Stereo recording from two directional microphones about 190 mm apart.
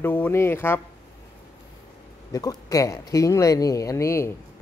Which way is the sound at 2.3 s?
20° left (ahead or behind).